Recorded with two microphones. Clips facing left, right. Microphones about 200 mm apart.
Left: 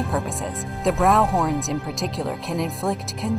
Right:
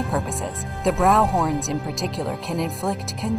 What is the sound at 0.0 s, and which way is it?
Speech, centre (ahead or behind).